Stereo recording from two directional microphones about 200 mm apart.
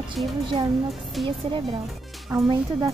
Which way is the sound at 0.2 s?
Centre (ahead or behind).